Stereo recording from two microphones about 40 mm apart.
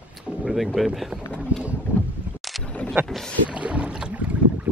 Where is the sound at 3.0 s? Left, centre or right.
Right.